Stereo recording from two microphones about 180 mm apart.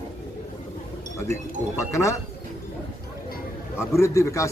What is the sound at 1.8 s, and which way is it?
Speech, 15° left (ahead or behind).